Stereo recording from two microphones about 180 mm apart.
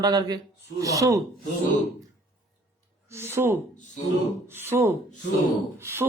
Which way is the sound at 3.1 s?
15° right (ahead or behind).